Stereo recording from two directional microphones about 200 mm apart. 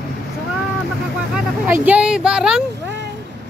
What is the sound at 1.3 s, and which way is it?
Speech, 5° right (ahead or behind).